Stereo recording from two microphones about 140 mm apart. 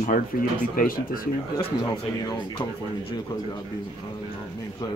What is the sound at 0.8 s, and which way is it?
Speech, 90° left.